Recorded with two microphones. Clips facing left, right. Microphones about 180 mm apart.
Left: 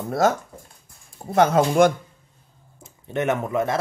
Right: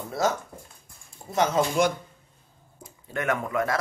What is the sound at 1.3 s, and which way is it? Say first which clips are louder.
Speech: left 6 dB; 55° left (ahead or behind).